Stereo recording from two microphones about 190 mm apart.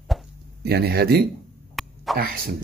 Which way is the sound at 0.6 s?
60° right (ahead or behind).